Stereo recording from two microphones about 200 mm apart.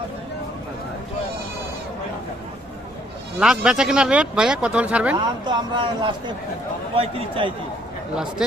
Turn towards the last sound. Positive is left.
turn(degrees=-25)  # may be behind; listen again after turning